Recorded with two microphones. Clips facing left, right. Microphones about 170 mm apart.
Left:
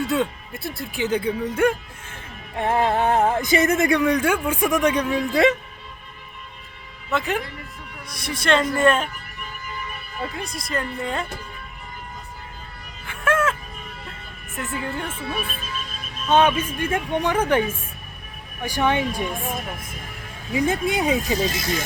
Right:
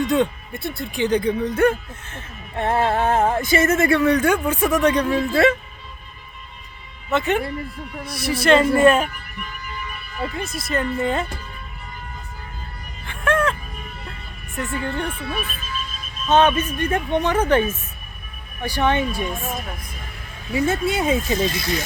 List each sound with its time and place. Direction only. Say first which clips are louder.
0.0 s speech: right 3 dB; centre (ahead or behind)
7.1 s speech: right 4 dB; centre (ahead or behind)
10.2 s speech: right 3 dB; centre (ahead or behind)
13.1 s music: right 1 dB; 5° left (ahead or behind)
14.5 s speech: right 3 dB; centre (ahead or behind)
15.1 s speech: even; 25° left (ahead or behind)
16.3 s speech: right 1 dB; 10° left (ahead or behind)
18.6 s speech: right 1 dB; 10° left (ahead or behind)
21.3 s speech: right 1 dB; 40° left (ahead or behind)